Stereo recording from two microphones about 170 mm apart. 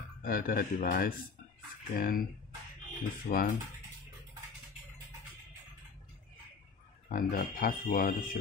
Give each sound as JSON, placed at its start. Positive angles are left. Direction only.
{"t": 0.2, "sound": "speech", "side_deg": 55}
{"t": 7.1, "sound": "speech", "side_deg": 55}